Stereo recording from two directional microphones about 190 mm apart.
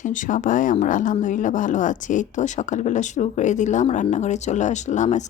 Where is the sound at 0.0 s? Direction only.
40° left (ahead or behind).